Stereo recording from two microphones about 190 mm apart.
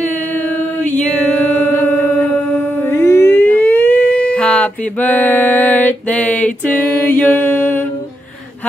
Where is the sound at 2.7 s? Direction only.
10° left (ahead or behind).